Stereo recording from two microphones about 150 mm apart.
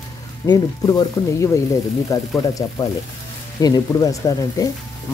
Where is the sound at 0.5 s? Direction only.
25° left (ahead or behind).